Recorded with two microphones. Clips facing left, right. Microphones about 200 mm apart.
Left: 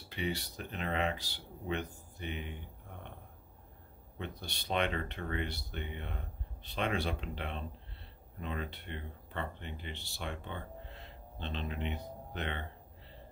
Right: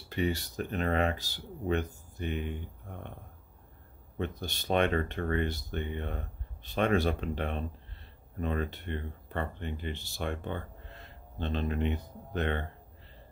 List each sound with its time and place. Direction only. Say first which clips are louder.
0.1 s speech: right 6 dB; 45° right (ahead or behind)
4.2 s speech: right 8 dB; 45° right (ahead or behind)